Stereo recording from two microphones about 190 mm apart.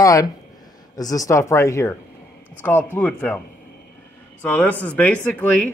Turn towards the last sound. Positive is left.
turn(degrees=5)  # may be behind; listen again after turning